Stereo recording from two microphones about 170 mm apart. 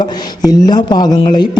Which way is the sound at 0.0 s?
20° left (ahead or behind).